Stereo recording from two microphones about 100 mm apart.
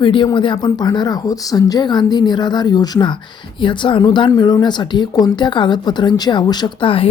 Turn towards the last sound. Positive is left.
turn(degrees=65)  # may be behind; listen again after turning